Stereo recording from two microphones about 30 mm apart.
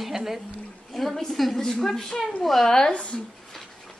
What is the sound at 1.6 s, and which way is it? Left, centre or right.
A woman's voice, centre.